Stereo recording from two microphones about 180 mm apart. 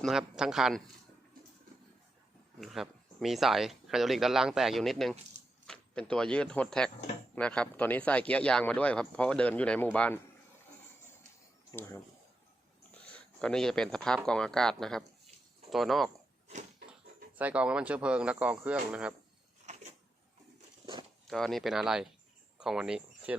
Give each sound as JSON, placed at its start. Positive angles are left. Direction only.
{"t": 0.0, "sound": "speech", "side_deg": 0}
{"t": 2.6, "sound": "a man's voice", "side_deg": 0}
{"t": 11.7, "sound": "a man's voice", "side_deg": 15}
{"t": 13.1, "sound": "speech", "side_deg": 5}
{"t": 17.3, "sound": "speech", "side_deg": -10}
{"t": 19.7, "sound": "a sound", "side_deg": -40}
{"t": 21.2, "sound": "speech", "side_deg": 0}